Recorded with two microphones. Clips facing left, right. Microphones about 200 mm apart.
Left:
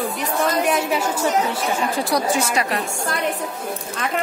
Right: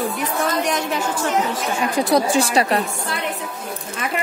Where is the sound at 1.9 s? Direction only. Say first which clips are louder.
Right 4 dB; 20° right (ahead or behind).